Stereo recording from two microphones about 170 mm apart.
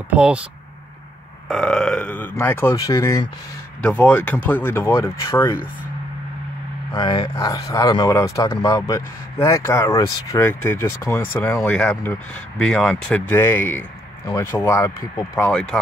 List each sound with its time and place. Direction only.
0.1 s speech: 5° right (ahead or behind)
1.5 s speech: 5° left (ahead or behind)
3.8 s speech: 10° left (ahead or behind)
6.9 s speech: 25° left (ahead or behind); by 15.8 s 5° left (ahead or behind)